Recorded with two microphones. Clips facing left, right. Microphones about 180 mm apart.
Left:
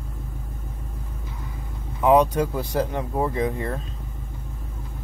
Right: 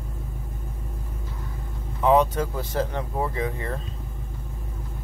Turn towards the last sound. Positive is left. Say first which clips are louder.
# left 4 dB
turn(degrees=15)  # may be behind; listen again after turning